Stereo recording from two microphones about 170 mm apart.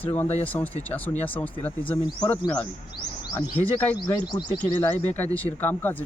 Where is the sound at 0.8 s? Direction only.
10° left (ahead or behind).